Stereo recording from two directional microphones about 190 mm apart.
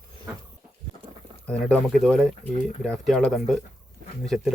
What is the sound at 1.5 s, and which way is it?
Speech, 5° left (ahead or behind).